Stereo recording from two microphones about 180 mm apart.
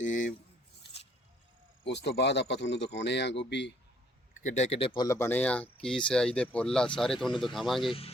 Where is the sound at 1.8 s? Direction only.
75° left (ahead or behind).